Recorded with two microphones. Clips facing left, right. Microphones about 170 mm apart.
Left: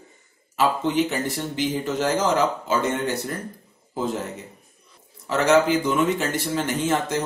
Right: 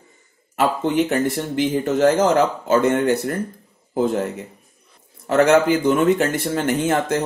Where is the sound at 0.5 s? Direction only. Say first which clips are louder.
Right 2 dB; 55° right (ahead or behind).